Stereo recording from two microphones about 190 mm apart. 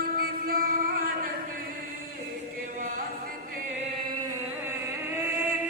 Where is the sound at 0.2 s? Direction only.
50° right (ahead or behind).